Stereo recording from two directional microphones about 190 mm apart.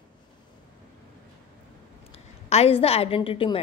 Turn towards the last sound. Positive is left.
turn(degrees=30)  # may be behind; listen again after turning